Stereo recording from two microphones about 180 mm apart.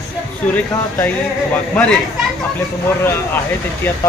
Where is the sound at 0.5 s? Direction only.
10° left (ahead or behind).